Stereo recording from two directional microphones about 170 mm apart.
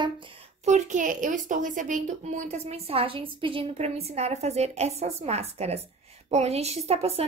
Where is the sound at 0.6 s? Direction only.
45° right (ahead or behind).